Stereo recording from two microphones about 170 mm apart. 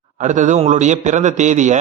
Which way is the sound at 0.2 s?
45° right (ahead or behind).